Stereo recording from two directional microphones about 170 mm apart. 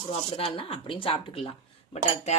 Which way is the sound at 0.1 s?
35° left (ahead or behind).